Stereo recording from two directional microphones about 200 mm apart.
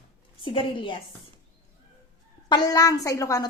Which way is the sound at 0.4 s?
25° left (ahead or behind).